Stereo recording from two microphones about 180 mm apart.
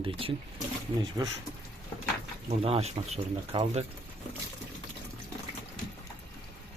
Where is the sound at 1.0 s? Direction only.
20° right (ahead or behind).